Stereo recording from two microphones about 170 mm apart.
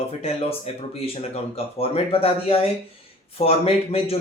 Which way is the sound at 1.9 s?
35° left (ahead or behind).